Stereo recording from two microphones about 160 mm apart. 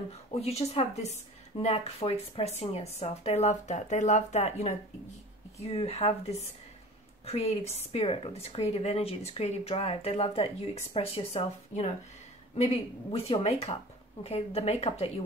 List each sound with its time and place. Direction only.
0.1 s a woman's voice: 40° left (ahead or behind)